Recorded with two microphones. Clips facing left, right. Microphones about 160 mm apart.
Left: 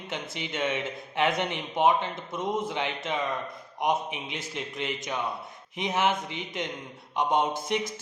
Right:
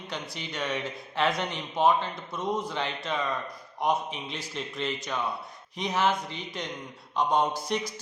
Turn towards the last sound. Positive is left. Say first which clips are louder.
# even
turn(degrees=20)  # may be behind; listen again after turning